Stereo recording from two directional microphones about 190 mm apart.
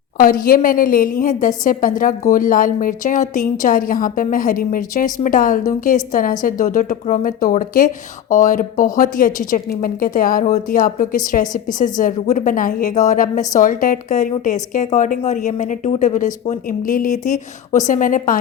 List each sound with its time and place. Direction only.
0.2 s a woman's voice: 50° left (ahead or behind)